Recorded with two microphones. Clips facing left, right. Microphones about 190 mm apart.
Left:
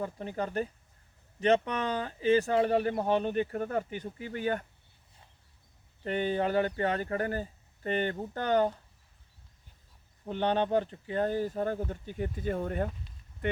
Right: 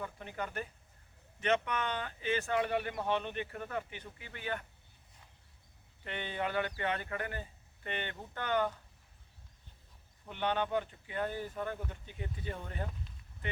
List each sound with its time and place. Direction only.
0.0 s speech: 35° left (ahead or behind)
6.1 s speech: 40° left (ahead or behind)
10.2 s speech: 40° left (ahead or behind)